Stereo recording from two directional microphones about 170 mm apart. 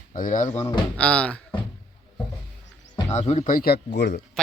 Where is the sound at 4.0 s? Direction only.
80° left.